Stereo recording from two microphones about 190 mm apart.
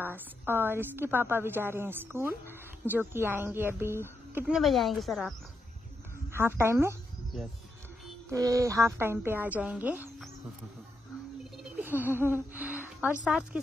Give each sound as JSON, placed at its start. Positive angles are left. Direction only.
{"t": 0.0, "sound": "a woman's voice", "side_deg": -10}
{"t": 6.3, "sound": "a woman's voice", "side_deg": -15}
{"t": 7.3, "sound": "speech", "side_deg": 0}
{"t": 8.3, "sound": "a woman's voice", "side_deg": -15}
{"t": 11.5, "sound": "a sound", "side_deg": -10}
{"t": 13.2, "sound": "speech", "side_deg": -5}